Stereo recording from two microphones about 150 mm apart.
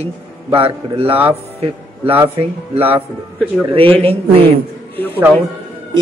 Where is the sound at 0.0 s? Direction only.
40° right (ahead or behind).